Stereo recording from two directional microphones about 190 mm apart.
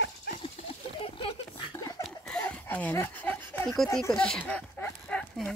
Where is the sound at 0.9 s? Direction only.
30° left (ahead or behind).